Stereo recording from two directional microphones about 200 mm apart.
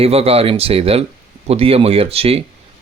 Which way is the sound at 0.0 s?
30° right (ahead or behind).